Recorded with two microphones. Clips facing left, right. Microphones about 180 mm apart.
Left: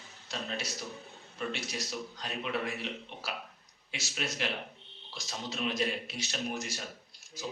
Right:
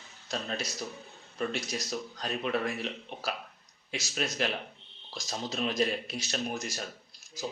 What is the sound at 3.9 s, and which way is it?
Speech, 40° right (ahead or behind).